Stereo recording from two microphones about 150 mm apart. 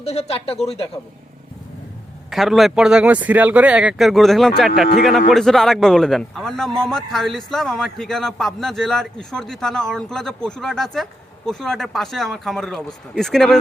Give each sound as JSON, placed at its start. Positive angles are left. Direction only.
{"t": 0.0, "sound": "speech", "side_deg": 45}
{"t": 2.3, "sound": "a man's voice", "side_deg": 0}